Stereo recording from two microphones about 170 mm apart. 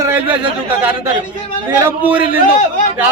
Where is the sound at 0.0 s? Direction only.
10° right (ahead or behind).